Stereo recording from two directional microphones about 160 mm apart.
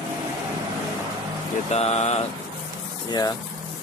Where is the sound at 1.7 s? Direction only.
40° left (ahead or behind).